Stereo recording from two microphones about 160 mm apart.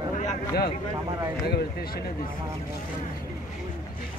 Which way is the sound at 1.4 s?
70° left (ahead or behind).